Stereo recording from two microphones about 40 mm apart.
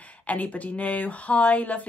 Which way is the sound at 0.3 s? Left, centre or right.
Left.